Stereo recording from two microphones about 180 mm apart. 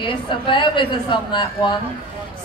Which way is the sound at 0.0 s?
30° left (ahead or behind).